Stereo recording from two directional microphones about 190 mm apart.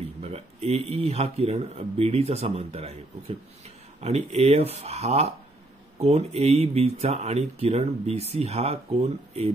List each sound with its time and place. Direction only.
0.2 s speech: 35° right (ahead or behind)